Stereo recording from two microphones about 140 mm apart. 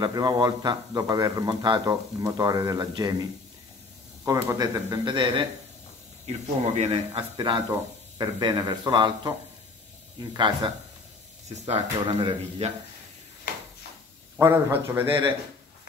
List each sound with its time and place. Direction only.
0.0 s a man's voice: 30° right (ahead or behind)
6.2 s speech: 50° right (ahead or behind)
7.3 s a man's voice: 35° right (ahead or behind)
10.3 s a man's voice: 35° right (ahead or behind)
11.4 s speech: 45° right (ahead or behind)
14.4 s a man's voice: 15° right (ahead or behind)